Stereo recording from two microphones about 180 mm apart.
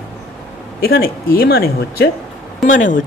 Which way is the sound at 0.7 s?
55° left (ahead or behind).